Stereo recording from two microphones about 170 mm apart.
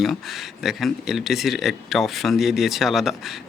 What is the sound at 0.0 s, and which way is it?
Speech, centre (ahead or behind).